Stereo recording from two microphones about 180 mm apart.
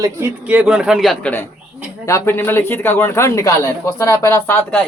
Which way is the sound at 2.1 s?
15° left (ahead or behind).